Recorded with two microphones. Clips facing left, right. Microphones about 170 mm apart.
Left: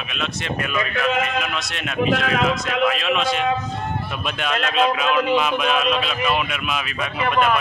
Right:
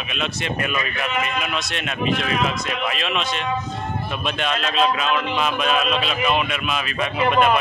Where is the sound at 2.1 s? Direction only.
90° left.